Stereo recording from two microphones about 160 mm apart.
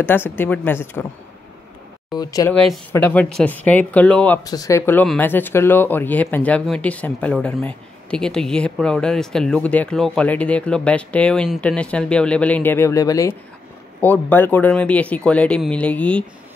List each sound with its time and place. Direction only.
0.0 s speech: 15° left (ahead or behind)
2.1 s speech: 25° left (ahead or behind)
2.5 s speech: 10° left (ahead or behind)
4.5 s speech: 20° left (ahead or behind)